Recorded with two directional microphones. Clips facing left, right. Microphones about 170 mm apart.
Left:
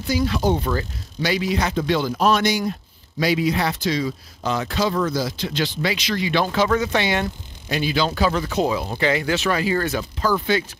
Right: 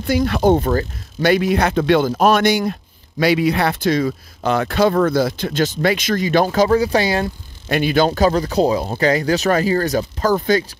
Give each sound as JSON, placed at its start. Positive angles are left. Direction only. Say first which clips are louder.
{"t": 0.0, "sound": "speech", "louder": "right 5 dB", "side_deg": -60}
{"t": 7.6, "sound": "speech", "louder": "right 6 dB", "side_deg": -60}